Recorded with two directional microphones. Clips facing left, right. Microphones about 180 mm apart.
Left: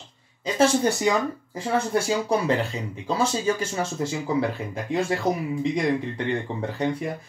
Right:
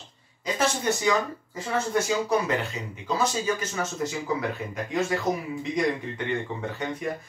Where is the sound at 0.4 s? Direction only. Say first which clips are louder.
Left 6 dB; 30° left (ahead or behind).